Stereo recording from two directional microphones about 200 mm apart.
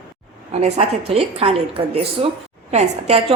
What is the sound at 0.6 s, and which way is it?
A woman's voice, 30° right (ahead or behind).